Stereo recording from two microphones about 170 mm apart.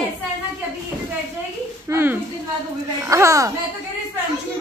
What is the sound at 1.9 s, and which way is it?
A woman's voice, 15° right (ahead or behind).